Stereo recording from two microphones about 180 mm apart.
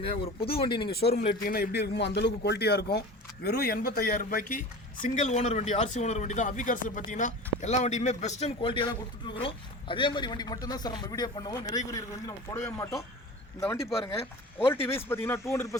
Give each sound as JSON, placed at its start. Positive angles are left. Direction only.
{"t": 0.0, "sound": "speech", "side_deg": 30}
{"t": 0.9, "sound": "speech", "side_deg": 60}
{"t": 13.6, "sound": "speech", "side_deg": 15}